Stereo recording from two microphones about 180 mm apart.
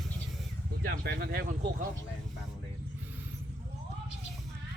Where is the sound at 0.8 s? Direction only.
60° right (ahead or behind).